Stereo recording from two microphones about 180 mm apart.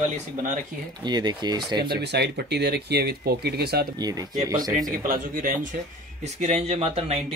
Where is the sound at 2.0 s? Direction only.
70° right (ahead or behind).